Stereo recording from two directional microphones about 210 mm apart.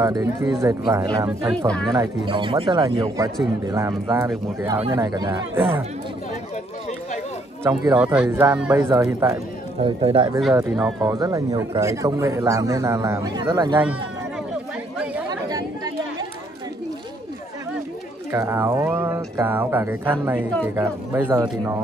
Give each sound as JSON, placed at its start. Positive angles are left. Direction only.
{"t": 0.0, "sound": "speech", "side_deg": -15}
{"t": 1.7, "sound": "speech", "side_deg": 5}
{"t": 2.0, "sound": "speech", "side_deg": -25}
{"t": 7.6, "sound": "speech", "side_deg": -10}
{"t": 9.8, "sound": "speech", "side_deg": -25}
{"t": 10.5, "sound": "speech", "side_deg": -10}
{"t": 15.2, "sound": "chatter", "side_deg": -20}
{"t": 18.3, "sound": "speech", "side_deg": -10}